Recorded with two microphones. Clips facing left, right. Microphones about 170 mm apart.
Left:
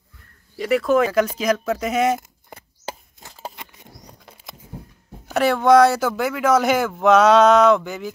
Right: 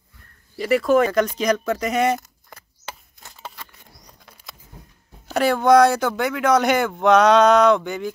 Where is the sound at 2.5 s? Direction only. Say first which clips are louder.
Left 5 dB; 30° left (ahead or behind).